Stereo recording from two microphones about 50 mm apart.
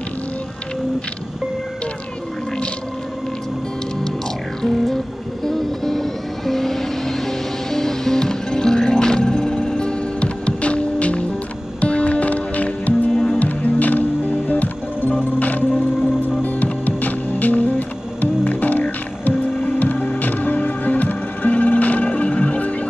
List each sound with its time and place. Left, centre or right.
4.6 s music: centre; by 13.1 s left
13.1 s music: centre
13.4 s music: left
16.6 s music: left